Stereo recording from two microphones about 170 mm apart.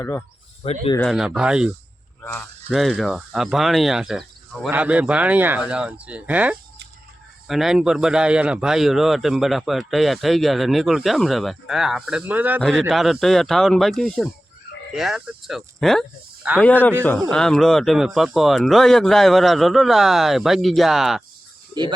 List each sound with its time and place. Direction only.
0.0 s speech: 15° left (ahead or behind)
0.6 s speech: 35° left (ahead or behind)
0.9 s a man's voice: centre (ahead or behind)